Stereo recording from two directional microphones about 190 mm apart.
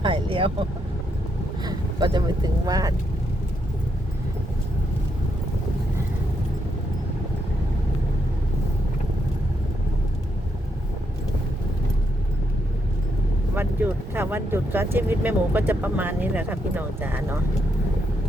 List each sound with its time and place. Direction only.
0.0 s vehicle: 25° right (ahead or behind)
1.6 s speech: 20° right (ahead or behind)
13.6 s speech: 10° right (ahead or behind)